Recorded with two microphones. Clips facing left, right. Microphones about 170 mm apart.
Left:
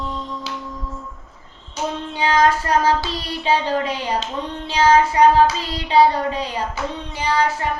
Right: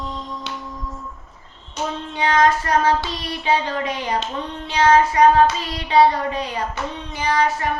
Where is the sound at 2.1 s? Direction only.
30° left (ahead or behind).